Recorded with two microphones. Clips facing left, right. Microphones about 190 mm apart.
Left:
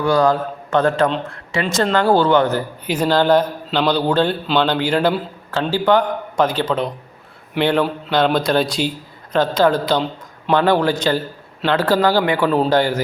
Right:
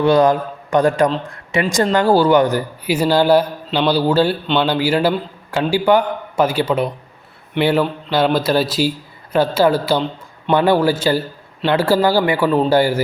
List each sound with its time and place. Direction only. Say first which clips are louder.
0.0 s speech: right 3 dB; 20° right (ahead or behind)